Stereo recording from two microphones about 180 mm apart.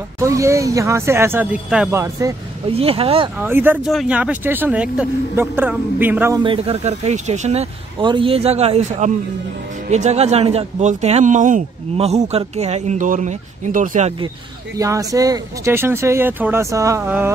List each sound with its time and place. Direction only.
0.2 s speech: 15° right (ahead or behind)
2.7 s speech: 30° right (ahead or behind)
3.3 s speech: 10° right (ahead or behind)
6.3 s speech: 30° right (ahead or behind)
8.0 s speech: 30° right (ahead or behind); by 14.1 s 45° right (ahead or behind)
14.8 s speech: 20° right (ahead or behind)